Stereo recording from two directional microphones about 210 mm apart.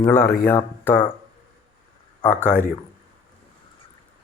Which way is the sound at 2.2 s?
5° left (ahead or behind).